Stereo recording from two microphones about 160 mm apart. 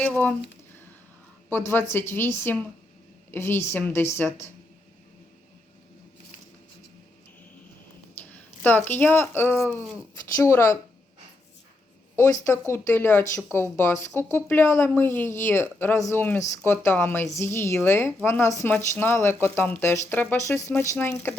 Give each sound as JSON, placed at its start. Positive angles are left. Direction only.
{"t": 0.0, "sound": "speech", "side_deg": 10}
{"t": 1.5, "sound": "speech", "side_deg": 15}
{"t": 8.2, "sound": "speech", "side_deg": 10}
{"t": 12.1, "sound": "speech", "side_deg": 20}